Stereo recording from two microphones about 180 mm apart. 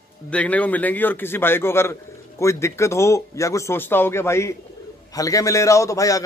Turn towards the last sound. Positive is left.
turn(degrees=20)  # may be behind; listen again after turning